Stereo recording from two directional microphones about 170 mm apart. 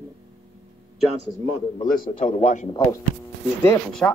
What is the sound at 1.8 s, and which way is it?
Speech, 50° left (ahead or behind).